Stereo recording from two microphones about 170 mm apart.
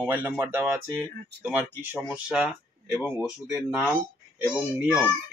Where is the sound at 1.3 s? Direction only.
75° right (ahead or behind).